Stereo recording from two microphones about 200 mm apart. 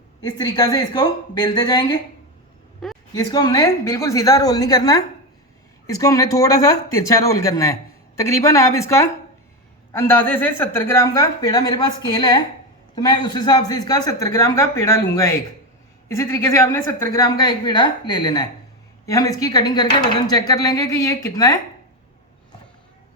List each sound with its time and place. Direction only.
0.3 s speech: 20° left (ahead or behind)
2.8 s a sound: centre (ahead or behind)
3.2 s speech: 20° left (ahead or behind)